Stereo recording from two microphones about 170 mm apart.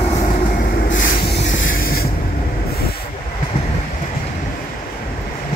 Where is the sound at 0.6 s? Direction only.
80° left; by 2.0 s 60° left (ahead or behind).